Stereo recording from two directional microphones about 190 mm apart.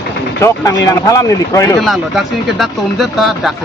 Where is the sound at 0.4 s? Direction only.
15° left (ahead or behind).